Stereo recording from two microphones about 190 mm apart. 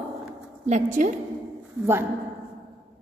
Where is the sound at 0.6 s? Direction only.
40° right (ahead or behind).